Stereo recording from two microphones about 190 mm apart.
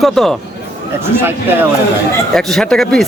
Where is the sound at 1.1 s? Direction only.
10° right (ahead or behind).